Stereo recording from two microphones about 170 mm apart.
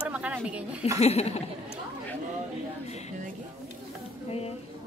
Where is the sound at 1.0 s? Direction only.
40° left (ahead or behind).